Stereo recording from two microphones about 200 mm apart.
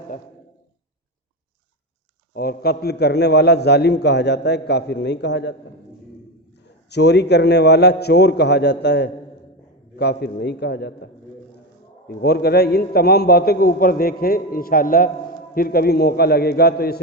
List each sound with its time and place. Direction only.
2.3 s a man's voice: 50° left (ahead or behind)
6.9 s a man's voice: 55° left (ahead or behind)